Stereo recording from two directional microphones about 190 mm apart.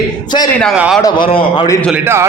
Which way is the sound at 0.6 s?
Centre (ahead or behind).